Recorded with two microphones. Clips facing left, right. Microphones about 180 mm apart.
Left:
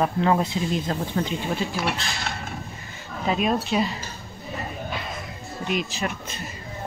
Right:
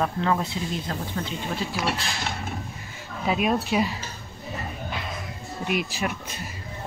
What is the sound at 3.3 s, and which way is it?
Speech, 10° right (ahead or behind).